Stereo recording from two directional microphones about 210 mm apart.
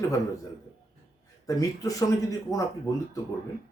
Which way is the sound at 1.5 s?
15° left (ahead or behind).